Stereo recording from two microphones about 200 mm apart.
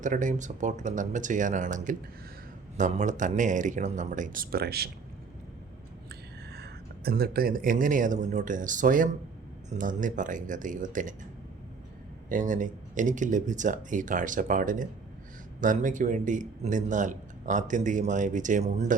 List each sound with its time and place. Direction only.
0.0 s speech: 40° right (ahead or behind)
6.1 s speech: 50° right (ahead or behind)
12.3 s speech: 40° right (ahead or behind)